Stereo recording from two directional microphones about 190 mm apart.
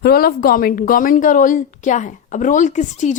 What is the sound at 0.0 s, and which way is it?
A woman's voice, 55° left (ahead or behind).